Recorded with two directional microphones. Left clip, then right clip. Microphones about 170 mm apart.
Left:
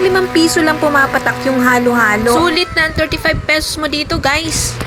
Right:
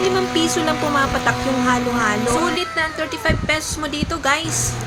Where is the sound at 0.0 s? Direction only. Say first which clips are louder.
Left 6 dB; 35° left (ahead or behind).